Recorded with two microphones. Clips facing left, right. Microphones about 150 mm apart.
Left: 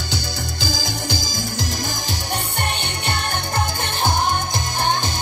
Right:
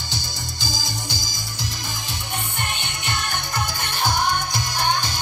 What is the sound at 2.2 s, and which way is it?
Music, 75° left (ahead or behind).